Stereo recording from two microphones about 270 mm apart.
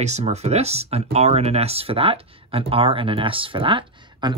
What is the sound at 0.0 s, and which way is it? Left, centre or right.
Speech, right.